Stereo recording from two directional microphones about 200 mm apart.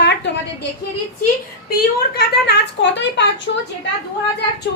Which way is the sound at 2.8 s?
60° left (ahead or behind).